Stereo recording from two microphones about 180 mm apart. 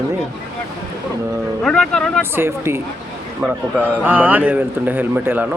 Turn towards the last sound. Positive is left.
turn(degrees=-10)  # may be behind; listen again after turning